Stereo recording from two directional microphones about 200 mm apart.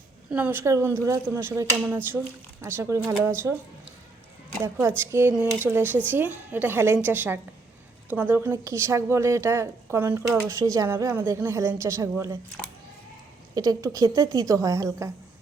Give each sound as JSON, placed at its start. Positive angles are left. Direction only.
{"t": 0.3, "sound": "a woman's voice", "side_deg": -10}
{"t": 4.6, "sound": "a woman's voice", "side_deg": -10}
{"t": 13.5, "sound": "a woman's voice", "side_deg": -20}